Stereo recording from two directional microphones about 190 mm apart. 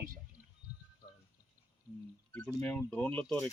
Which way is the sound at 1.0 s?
25° left (ahead or behind).